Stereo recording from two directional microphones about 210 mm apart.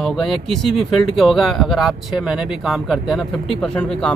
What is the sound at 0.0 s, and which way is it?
Speech, centre (ahead or behind).